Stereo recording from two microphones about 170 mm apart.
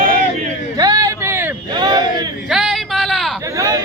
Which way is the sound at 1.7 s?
25° right (ahead or behind).